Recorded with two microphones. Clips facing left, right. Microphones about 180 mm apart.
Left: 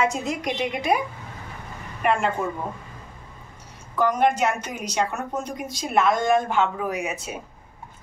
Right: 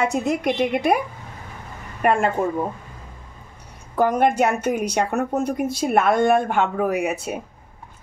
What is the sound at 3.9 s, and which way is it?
A woman's voice, 50° right (ahead or behind).